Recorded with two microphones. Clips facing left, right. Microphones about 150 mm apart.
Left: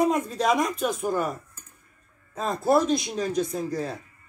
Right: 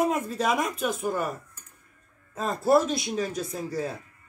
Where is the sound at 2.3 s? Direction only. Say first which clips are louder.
Even; 5° right (ahead or behind).